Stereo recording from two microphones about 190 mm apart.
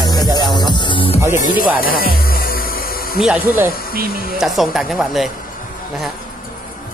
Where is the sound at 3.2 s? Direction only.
5° right (ahead or behind).